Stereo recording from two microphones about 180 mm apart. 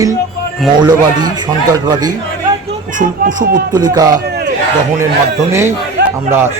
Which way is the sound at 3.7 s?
20° right (ahead or behind).